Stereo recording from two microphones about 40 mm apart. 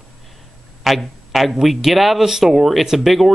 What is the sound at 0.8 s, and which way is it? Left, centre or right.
Speech, centre.